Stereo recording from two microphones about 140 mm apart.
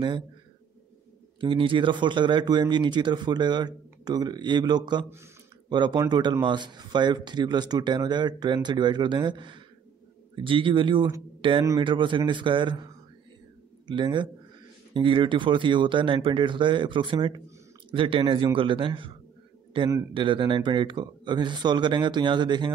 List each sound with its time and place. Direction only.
1.4 s speech: 40° right (ahead or behind)
13.8 s speech: 35° right (ahead or behind)